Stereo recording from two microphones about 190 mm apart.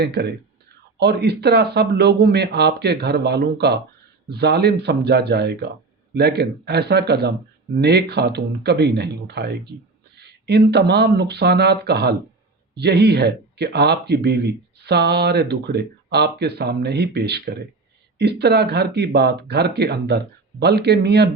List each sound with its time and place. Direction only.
0.0 s speech: 60° right (ahead or behind)